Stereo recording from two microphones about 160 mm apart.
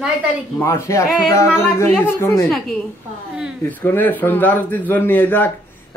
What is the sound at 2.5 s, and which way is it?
A man's voice, 5° left (ahead or behind).